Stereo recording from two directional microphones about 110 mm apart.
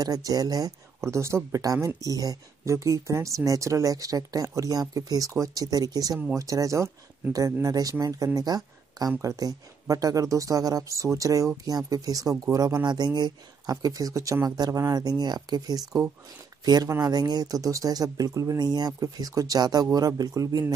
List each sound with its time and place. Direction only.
0.0 s speech: 35° right (ahead or behind)